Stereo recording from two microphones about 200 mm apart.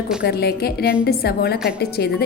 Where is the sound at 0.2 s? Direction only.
50° left (ahead or behind).